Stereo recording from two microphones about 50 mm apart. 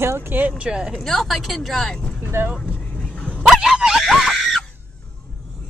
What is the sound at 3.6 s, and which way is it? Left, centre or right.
Speech, centre.